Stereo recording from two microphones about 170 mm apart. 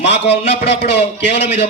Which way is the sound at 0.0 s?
90° left.